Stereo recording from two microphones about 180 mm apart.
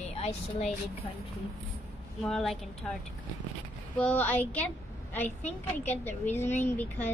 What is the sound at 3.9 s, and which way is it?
A woman's voice, 10° left (ahead or behind).